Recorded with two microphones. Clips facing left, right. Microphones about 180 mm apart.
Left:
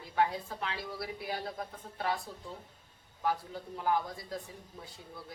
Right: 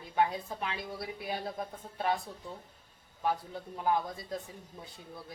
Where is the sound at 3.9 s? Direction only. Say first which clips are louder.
Right 1 dB; 20° right (ahead or behind).